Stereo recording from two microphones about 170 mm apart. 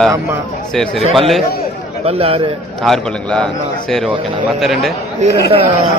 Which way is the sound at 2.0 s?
35° right (ahead or behind).